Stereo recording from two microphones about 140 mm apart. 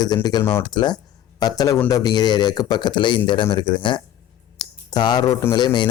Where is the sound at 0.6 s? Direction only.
30° left (ahead or behind).